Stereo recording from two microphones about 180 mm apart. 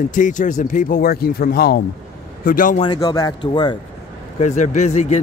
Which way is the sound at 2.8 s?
25° left (ahead or behind).